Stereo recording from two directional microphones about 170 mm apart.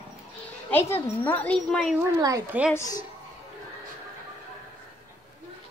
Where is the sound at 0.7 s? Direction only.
10° left (ahead or behind).